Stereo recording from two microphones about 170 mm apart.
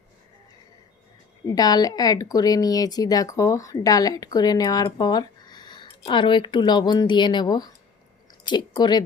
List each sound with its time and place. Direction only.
1.5 s speech: 20° left (ahead or behind)